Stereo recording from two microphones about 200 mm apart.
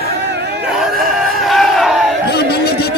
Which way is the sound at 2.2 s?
55° left (ahead or behind).